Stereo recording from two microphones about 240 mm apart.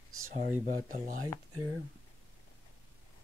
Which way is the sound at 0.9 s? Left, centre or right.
Right.